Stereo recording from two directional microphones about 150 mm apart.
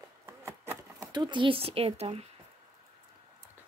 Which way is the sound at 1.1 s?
30° right (ahead or behind).